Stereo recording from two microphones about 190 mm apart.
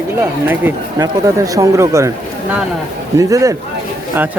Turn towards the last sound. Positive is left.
turn(degrees=-15)  # may be behind; listen again after turning